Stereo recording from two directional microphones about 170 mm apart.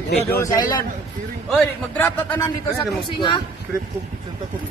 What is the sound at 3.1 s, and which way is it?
Speech, 25° left (ahead or behind).